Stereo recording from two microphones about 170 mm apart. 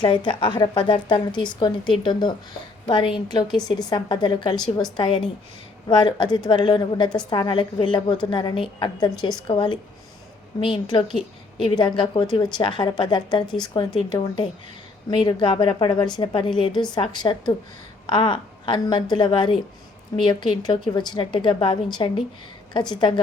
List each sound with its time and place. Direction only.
0.0 s a woman's voice: 25° left (ahead or behind)